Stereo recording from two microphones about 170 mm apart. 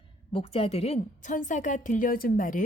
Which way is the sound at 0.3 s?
35° left (ahead or behind).